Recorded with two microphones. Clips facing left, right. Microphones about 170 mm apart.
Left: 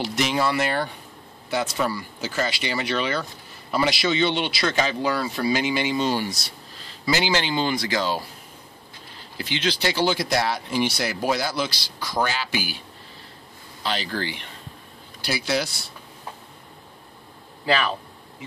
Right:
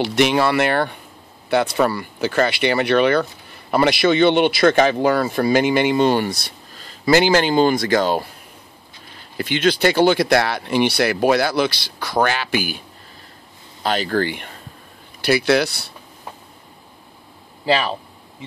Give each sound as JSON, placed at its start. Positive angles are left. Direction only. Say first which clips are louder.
{"t": 0.0, "sound": "speech", "louder": "right 7 dB", "side_deg": -65}
{"t": 9.4, "sound": "speech", "louder": "right 8 dB", "side_deg": -55}
{"t": 13.8, "sound": "speech", "louder": "right 8 dB", "side_deg": -50}
{"t": 15.2, "sound": "speech", "louder": "right 9 dB", "side_deg": -65}
{"t": 17.6, "sound": "speech", "louder": "right 4 dB", "side_deg": -30}